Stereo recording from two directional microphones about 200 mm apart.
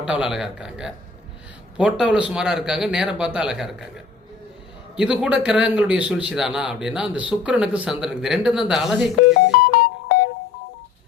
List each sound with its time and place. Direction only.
0.0 s a man's voice: 5° right (ahead or behind)
9.3 s music: 50° left (ahead or behind)